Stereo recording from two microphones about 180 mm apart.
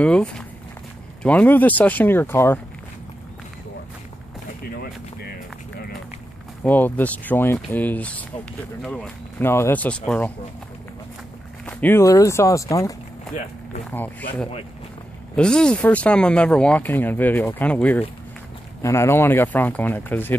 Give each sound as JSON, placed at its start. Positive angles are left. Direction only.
{"t": 0.0, "sound": "speech", "side_deg": 5}
{"t": 6.6, "sound": "speech", "side_deg": 10}
{"t": 11.6, "sound": "speech", "side_deg": 10}
{"t": 13.9, "sound": "speech", "side_deg": 10}